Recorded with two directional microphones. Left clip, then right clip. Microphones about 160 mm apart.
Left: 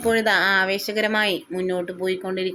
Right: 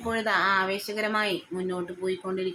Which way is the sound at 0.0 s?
25° left (ahead or behind).